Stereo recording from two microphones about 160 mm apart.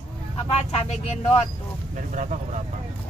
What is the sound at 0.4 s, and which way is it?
Speech, 40° left (ahead or behind).